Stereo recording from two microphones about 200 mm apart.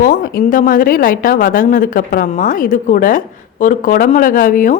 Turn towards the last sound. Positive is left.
turn(degrees=40)  # may be behind; listen again after turning